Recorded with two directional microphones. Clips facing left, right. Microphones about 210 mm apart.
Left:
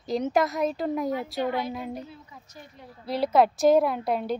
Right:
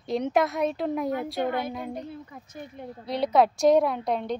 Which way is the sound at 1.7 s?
5° left (ahead or behind).